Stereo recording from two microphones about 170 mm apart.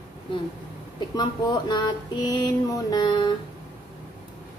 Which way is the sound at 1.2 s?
25° left (ahead or behind).